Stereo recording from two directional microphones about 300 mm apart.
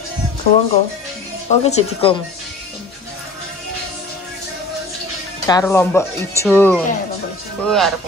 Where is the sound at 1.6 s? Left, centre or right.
Centre.